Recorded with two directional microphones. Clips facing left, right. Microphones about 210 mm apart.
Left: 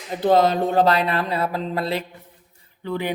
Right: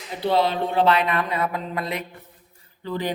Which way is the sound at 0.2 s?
45° left (ahead or behind).